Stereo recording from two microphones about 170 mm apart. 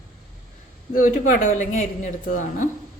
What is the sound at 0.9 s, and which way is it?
A man's voice, 50° left (ahead or behind).